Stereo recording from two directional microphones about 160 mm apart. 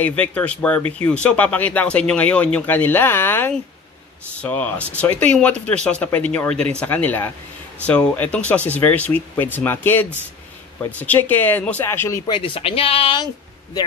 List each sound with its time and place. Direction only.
0.0 s speech: 10° left (ahead or behind)
12.3 s speech: 30° left (ahead or behind)